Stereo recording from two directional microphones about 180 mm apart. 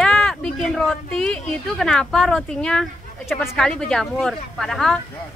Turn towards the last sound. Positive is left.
turn(degrees=0)  # may be behind; listen again after turning